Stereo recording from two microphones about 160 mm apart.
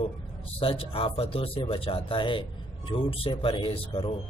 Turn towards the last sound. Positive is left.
turn(degrees=35)  # may be behind; listen again after turning